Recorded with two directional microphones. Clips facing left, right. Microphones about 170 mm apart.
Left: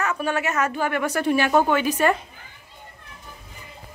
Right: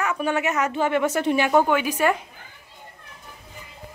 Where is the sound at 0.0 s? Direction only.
15° right (ahead or behind).